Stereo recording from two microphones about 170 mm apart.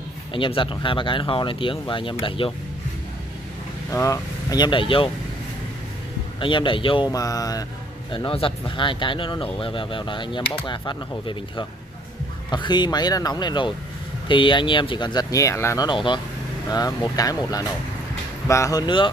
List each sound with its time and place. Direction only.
0.3 s speech: 30° left (ahead or behind)
3.9 s speech: 20° left (ahead or behind)
6.4 s speech: 30° left (ahead or behind)
8.1 s speech: 30° left (ahead or behind)